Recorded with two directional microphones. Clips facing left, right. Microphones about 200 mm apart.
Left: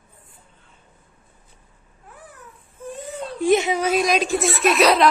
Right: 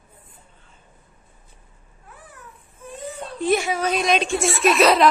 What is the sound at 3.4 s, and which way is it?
Speech, 20° left (ahead or behind).